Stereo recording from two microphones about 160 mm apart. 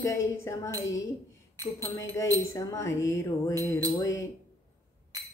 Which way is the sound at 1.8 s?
15° left (ahead or behind).